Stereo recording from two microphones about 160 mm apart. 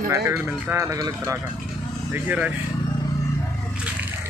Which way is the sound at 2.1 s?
10° right (ahead or behind).